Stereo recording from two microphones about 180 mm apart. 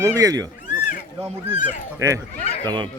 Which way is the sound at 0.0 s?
20° right (ahead or behind).